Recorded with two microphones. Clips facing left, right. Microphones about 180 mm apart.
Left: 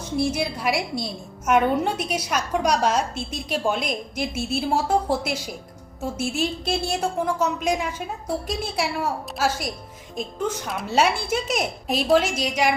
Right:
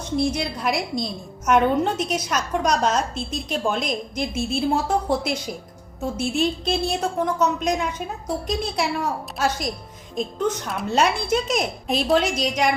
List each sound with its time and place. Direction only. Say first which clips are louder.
0.0 s a woman's voice: right 1 dB; 10° left (ahead or behind)